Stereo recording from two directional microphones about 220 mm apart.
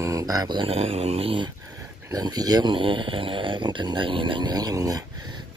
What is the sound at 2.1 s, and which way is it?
Speech, 15° right (ahead or behind).